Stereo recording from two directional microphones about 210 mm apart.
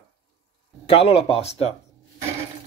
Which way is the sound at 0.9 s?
25° left (ahead or behind).